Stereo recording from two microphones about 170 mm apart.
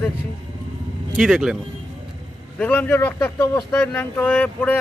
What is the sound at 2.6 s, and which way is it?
Speech, 10° left (ahead or behind).